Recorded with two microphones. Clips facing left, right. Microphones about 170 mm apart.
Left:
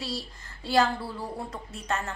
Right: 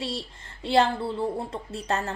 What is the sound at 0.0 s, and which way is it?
Speech, 25° right (ahead or behind).